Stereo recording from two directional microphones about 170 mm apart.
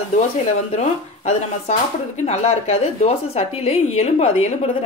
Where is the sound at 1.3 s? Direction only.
40° left (ahead or behind).